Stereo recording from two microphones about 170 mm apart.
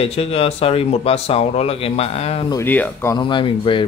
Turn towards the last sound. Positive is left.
turn(degrees=30)  # may be behind; listen again after turning